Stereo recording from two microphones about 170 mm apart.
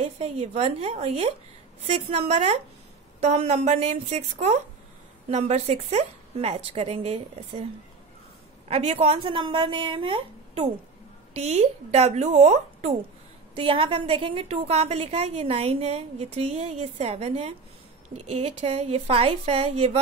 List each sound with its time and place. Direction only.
0.0 s a woman's voice: 40° right (ahead or behind)
8.6 s a woman's voice: 35° right (ahead or behind)
13.6 s a woman's voice: 30° right (ahead or behind)